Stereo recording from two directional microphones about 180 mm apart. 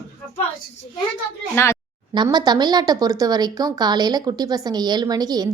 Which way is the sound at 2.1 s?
25° right (ahead or behind).